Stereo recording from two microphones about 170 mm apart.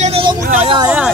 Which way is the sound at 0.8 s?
10° right (ahead or behind).